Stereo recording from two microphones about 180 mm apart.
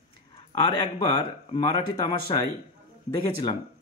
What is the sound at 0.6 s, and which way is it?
Speech, 25° left (ahead or behind).